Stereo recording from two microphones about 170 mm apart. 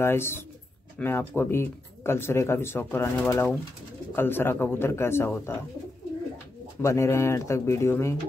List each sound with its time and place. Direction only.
0.0 s speech: 15° left (ahead or behind)
6.8 s speech: 15° left (ahead or behind)